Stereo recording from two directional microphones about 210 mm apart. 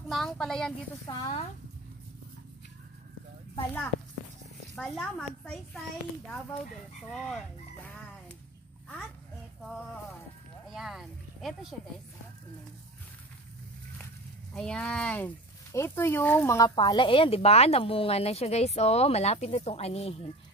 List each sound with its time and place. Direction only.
0.1 s speech: centre (ahead or behind)
1.0 s speech: 25° left (ahead or behind)
4.7 s speech: 5° left (ahead or behind)
10.7 s a sound: centre (ahead or behind)
11.7 s speech: centre (ahead or behind)
14.5 s speech: 5° left (ahead or behind); by 20.2 s 30° left (ahead or behind)